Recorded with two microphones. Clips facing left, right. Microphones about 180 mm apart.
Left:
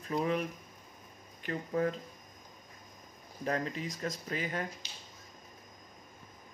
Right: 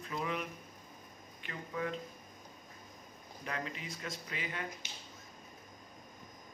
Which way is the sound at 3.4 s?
40° left (ahead or behind).